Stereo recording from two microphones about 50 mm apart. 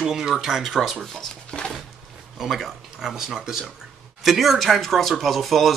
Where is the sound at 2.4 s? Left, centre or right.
Centre.